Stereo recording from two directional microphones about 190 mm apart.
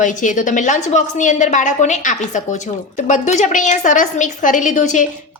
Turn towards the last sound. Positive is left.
turn(degrees=40)  # may be behind; listen again after turning